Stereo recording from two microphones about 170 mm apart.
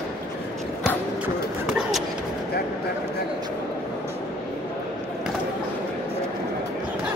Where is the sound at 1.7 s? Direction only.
Centre (ahead or behind).